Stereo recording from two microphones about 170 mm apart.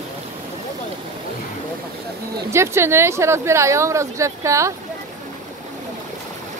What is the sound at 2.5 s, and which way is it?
Speech, 15° right (ahead or behind).